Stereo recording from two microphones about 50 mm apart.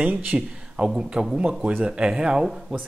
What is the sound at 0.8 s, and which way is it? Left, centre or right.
Speech, centre.